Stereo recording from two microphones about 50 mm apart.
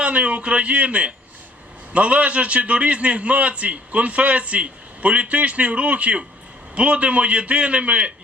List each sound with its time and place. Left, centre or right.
0.0 s a man's voice: right